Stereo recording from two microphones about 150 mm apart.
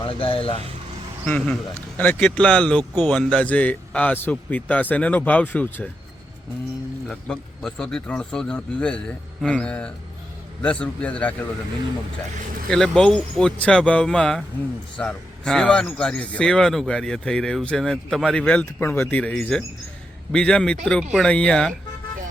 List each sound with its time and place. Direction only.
0.0 s speech: 35° left (ahead or behind)
1.2 s a man's voice: 10° left (ahead or behind)
7.1 s a man's voice: 5° left (ahead or behind)
12.6 s speech: 5° left (ahead or behind)